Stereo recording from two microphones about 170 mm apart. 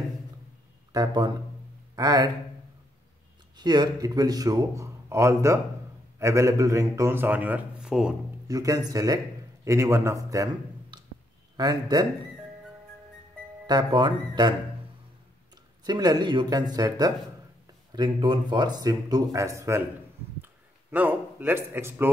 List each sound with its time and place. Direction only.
0.9 s speech: 25° right (ahead or behind)
3.5 s a man's voice: 25° right (ahead or behind); by 8.2 s 5° right (ahead or behind)
8.5 s a man's voice: 20° right (ahead or behind)
13.7 s speech: 25° right (ahead or behind)
15.5 s a man's voice: 25° right (ahead or behind)